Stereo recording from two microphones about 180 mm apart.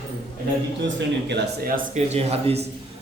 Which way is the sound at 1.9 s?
35° right (ahead or behind).